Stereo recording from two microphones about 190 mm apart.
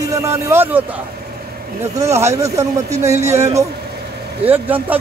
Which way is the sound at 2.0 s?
15° right (ahead or behind).